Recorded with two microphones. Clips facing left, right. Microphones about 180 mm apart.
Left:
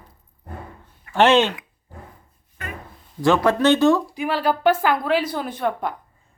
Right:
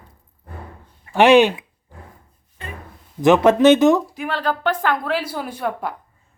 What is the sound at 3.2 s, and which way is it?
Speech, 20° right (ahead or behind).